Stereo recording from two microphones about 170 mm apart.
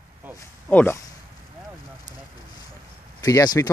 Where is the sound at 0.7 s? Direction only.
10° left (ahead or behind).